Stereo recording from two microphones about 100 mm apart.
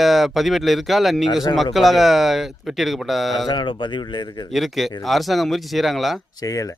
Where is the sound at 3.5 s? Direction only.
50° left (ahead or behind).